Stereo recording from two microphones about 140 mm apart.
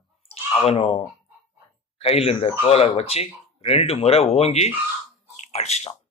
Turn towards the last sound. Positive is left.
turn(degrees=50)  # may be behind; listen again after turning